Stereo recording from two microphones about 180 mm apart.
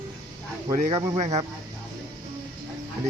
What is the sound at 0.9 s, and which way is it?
Speech, 20° right (ahead or behind).